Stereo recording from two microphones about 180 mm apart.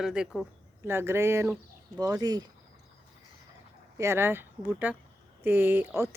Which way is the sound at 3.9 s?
15° right (ahead or behind).